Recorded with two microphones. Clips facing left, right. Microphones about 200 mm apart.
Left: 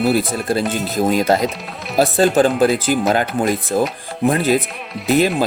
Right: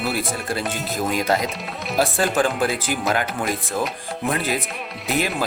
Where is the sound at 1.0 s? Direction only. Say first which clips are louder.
Left 6 dB; 35° left (ahead or behind).